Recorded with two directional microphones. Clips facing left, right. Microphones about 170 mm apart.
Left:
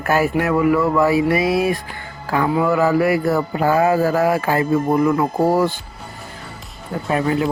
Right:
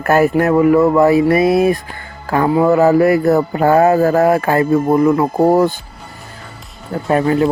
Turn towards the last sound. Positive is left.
turn(degrees=-40)  # may be behind; listen again after turning